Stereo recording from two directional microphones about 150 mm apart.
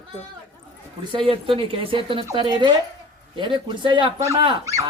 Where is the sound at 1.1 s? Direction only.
35° right (ahead or behind).